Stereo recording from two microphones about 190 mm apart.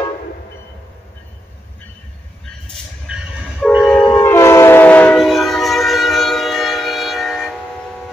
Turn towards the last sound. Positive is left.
turn(degrees=0)  # may be behind; listen again after turning